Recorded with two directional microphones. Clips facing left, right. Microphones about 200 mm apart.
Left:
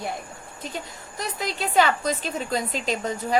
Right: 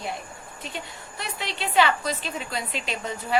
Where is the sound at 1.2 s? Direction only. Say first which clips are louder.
Left 4 dB; 40° left (ahead or behind).